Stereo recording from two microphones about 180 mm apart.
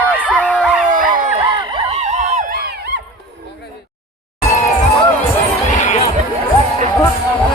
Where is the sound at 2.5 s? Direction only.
65° right (ahead or behind).